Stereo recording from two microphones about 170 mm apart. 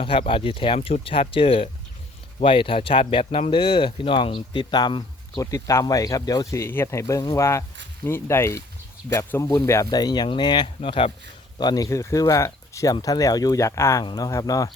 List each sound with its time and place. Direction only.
0.0 s speech: 30° left (ahead or behind)